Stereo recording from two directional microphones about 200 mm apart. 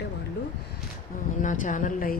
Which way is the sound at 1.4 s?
40° left (ahead or behind).